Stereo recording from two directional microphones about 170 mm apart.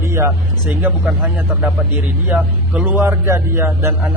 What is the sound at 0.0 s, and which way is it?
A man's voice, 15° right (ahead or behind).